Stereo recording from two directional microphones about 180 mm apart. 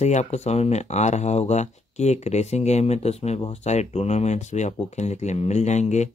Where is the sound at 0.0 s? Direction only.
40° left (ahead or behind).